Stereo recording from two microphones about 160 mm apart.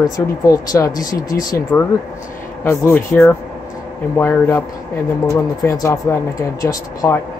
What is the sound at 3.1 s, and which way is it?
Speech, 5° left (ahead or behind).